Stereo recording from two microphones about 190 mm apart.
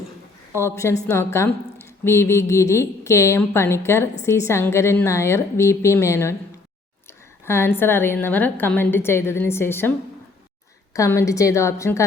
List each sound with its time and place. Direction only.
0.6 s a woman's voice: 15° left (ahead or behind)
7.4 s a woman's voice: 15° left (ahead or behind)
10.9 s a woman's voice: 15° left (ahead or behind)